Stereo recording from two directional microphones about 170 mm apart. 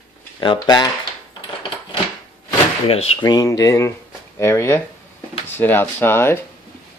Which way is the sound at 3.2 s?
20° left (ahead or behind).